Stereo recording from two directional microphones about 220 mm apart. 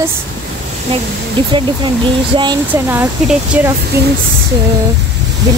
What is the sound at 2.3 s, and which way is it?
Speech, 20° right (ahead or behind).